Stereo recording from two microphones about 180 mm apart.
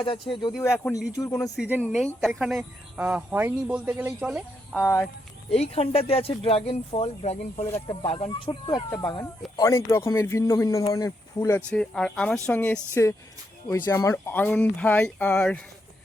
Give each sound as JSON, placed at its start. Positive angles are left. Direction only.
{"t": 0.0, "sound": "speech", "side_deg": 30}
{"t": 1.5, "sound": "speech", "side_deg": -10}
{"t": 1.8, "sound": "speech", "side_deg": 5}
{"t": 4.7, "sound": "speech", "side_deg": 10}
{"t": 5.5, "sound": "speech", "side_deg": 35}
{"t": 11.7, "sound": "speech", "side_deg": 5}